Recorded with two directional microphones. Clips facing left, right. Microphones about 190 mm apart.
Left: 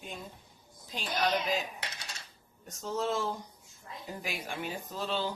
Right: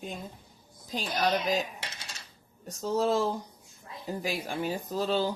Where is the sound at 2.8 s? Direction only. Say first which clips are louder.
Right 6 dB; 35° right (ahead or behind).